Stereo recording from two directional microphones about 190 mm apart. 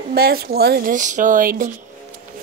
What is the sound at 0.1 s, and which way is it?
Speech, 55° right (ahead or behind).